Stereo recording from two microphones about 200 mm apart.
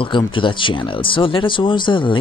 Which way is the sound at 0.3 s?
25° left (ahead or behind).